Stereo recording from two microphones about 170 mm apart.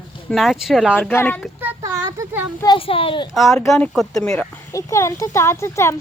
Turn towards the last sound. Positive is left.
turn(degrees=15)  # may be behind; listen again after turning